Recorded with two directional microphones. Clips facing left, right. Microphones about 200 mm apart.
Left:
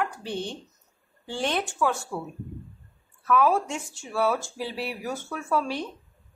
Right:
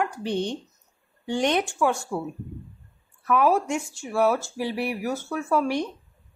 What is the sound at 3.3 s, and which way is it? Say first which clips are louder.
Speech: right 1 dB; 10° right (ahead or behind).